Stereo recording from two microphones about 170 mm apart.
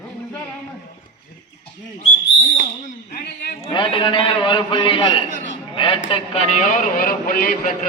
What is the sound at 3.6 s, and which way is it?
A man's voice, 30° left (ahead or behind).